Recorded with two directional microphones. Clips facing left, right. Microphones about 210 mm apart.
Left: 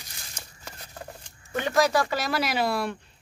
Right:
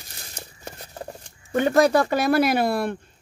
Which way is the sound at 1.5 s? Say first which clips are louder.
Right 6 dB; 50° right (ahead or behind).